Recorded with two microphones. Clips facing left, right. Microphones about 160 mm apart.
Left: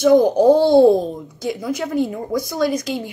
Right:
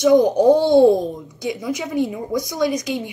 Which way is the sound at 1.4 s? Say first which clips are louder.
Left 1 dB; centre (ahead or behind).